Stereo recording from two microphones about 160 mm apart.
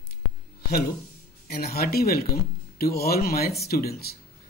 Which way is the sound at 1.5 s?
75° left (ahead or behind).